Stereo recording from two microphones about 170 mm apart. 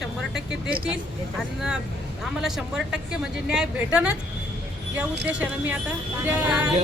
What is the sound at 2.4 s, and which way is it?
Speech, 5° right (ahead or behind).